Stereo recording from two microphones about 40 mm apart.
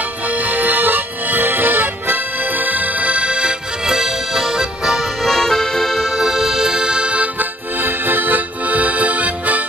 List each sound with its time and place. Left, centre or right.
0.3 s accordion: right; by 5.0 s centre
5.2 s accordion: centre
6.1 s music: centre; by 7.2 s right
7.3 s accordion: right